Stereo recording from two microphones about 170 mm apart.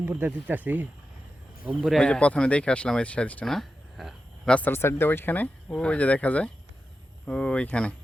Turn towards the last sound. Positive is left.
turn(degrees=5)  # may be behind; listen again after turning